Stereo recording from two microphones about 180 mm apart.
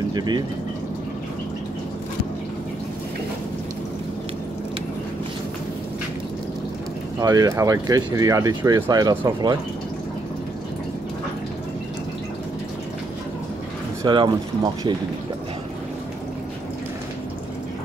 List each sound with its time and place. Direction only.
0.1 s speech: 25° right (ahead or behind)
7.2 s speech: 20° right (ahead or behind)
14.0 s speech: 25° right (ahead or behind)